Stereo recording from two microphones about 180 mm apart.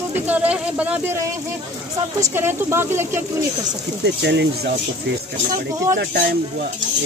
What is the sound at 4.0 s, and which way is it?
Speech, 70° right (ahead or behind).